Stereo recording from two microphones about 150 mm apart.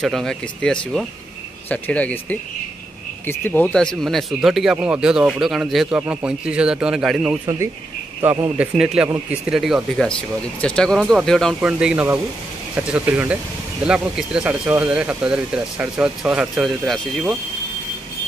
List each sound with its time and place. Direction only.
0.0 s a man's voice: centre (ahead or behind)